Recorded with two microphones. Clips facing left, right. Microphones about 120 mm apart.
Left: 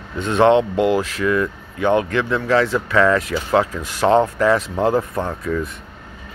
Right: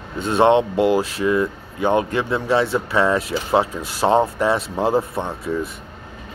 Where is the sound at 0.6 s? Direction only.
20° left (ahead or behind).